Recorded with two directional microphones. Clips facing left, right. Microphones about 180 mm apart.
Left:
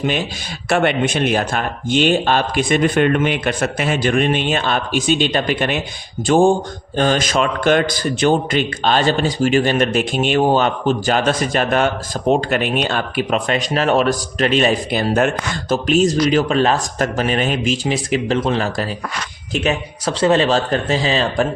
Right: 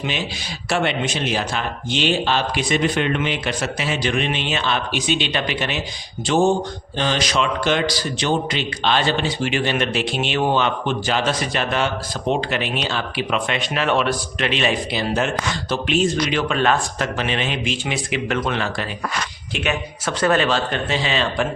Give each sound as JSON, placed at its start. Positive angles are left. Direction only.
{"t": 0.0, "sound": "a man's voice", "side_deg": 45}